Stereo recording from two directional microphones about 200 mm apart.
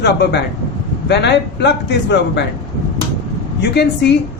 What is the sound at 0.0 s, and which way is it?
A woman's voice, 55° left (ahead or behind).